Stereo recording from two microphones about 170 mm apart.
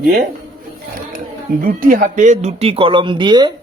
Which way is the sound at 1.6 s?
55° right (ahead or behind).